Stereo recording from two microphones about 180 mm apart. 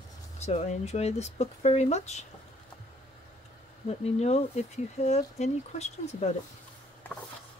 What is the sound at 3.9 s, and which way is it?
A woman's voice, 35° left (ahead or behind).